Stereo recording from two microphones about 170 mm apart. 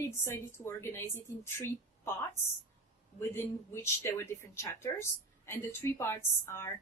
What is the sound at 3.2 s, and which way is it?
Speech, 15° left (ahead or behind).